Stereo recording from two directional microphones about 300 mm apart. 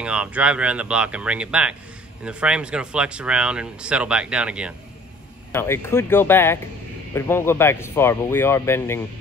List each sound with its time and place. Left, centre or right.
0.0 s speech: centre
5.5 s speech: centre